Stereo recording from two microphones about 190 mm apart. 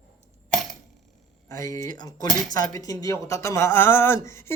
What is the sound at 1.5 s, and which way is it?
Speech, 15° left (ahead or behind).